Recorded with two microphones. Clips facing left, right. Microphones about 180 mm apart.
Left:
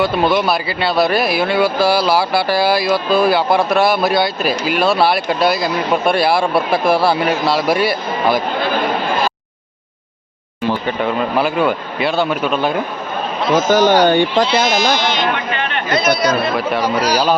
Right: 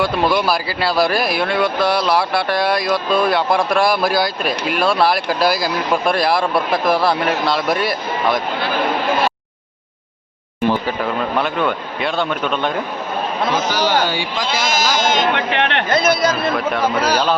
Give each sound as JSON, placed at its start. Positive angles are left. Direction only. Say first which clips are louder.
{"t": 0.0, "sound": "speech", "louder": "left 2 dB", "side_deg": 0}
{"t": 6.5, "sound": "a man's voice", "louder": "left 2 dB", "side_deg": 25}
{"t": 7.1, "sound": "speech", "louder": "left 2 dB", "side_deg": 5}
{"t": 10.8, "sound": "speech", "louder": "left 2 dB", "side_deg": 0}
{"t": 13.5, "sound": "speech", "louder": "left 8 dB", "side_deg": 50}
{"t": 14.4, "sound": "speech", "louder": "left 4 dB", "side_deg": -45}
{"t": 15.4, "sound": "speech", "louder": "right 2 dB", "side_deg": -70}
{"t": 16.0, "sound": "speech", "louder": "left 2 dB", "side_deg": -50}